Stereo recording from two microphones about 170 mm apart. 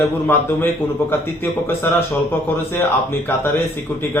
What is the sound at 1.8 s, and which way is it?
A man's voice, 10° left (ahead or behind).